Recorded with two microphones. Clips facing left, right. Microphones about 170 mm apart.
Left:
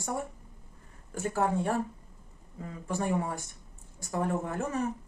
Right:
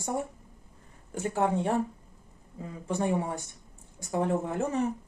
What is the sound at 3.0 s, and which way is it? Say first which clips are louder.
Speech: right 2 dB; 20° right (ahead or behind).